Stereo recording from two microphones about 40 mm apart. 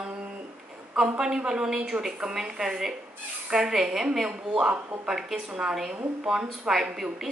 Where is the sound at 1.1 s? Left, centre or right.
Centre.